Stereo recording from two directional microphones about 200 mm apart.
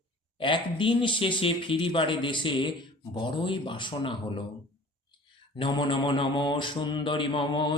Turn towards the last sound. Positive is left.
turn(degrees=25)  # may be behind; listen again after turning